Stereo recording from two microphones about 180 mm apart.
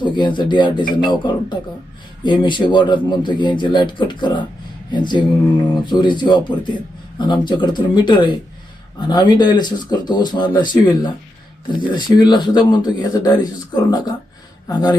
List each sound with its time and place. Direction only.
0.0 s a man's voice: 25° left (ahead or behind)